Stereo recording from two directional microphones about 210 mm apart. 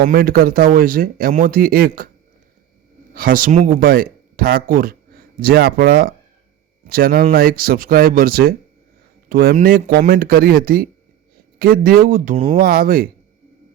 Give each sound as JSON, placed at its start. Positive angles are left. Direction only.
{"t": 0.0, "sound": "speech", "side_deg": -45}
{"t": 3.2, "sound": "speech", "side_deg": -45}